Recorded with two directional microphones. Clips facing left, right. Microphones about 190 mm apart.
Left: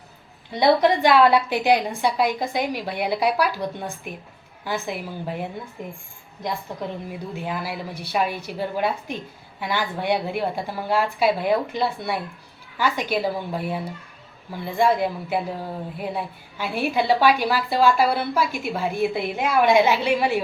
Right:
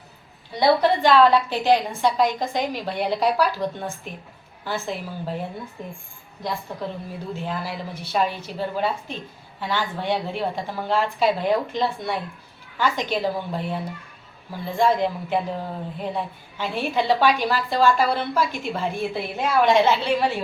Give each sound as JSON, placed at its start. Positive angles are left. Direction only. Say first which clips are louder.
{"t": 0.6, "sound": "a woman's voice", "louder": "left 1 dB", "side_deg": 15}